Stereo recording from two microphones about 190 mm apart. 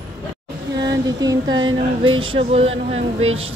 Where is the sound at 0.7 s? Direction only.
20° right (ahead or behind).